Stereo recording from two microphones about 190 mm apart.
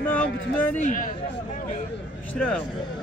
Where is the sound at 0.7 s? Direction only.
45° left (ahead or behind).